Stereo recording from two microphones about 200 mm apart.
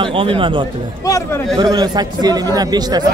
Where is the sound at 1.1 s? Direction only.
15° left (ahead or behind).